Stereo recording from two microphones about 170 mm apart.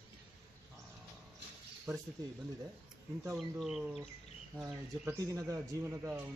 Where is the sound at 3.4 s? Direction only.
Centre (ahead or behind).